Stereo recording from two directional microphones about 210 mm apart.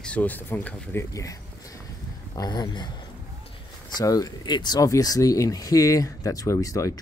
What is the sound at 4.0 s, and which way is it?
Speech, 15° left (ahead or behind).